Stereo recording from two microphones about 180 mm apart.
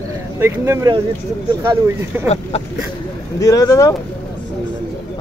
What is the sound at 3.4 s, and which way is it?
Speech, 20° left (ahead or behind).